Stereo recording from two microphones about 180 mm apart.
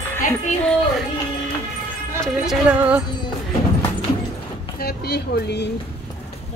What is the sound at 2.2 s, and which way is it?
Speech, 5° right (ahead or behind).